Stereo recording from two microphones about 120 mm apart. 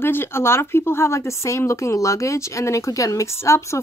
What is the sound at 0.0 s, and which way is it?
Speech, 20° left (ahead or behind).